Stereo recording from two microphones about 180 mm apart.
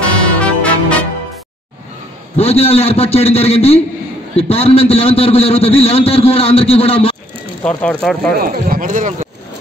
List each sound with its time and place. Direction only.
0.4 s music: 5° left (ahead or behind)
2.3 s a man's voice: 35° left (ahead or behind)
7.6 s speech: 5° left (ahead or behind)
8.3 s speech: 55° right (ahead or behind)